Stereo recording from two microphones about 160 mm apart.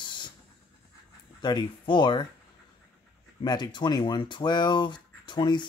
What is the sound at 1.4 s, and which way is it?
Speech, 30° left (ahead or behind).